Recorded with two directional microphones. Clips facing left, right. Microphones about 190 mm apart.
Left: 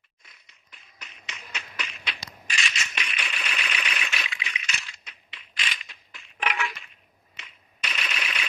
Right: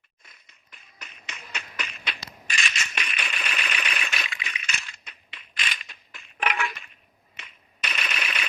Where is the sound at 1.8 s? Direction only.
50° right (ahead or behind).